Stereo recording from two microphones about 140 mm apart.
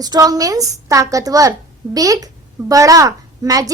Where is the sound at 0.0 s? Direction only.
25° right (ahead or behind).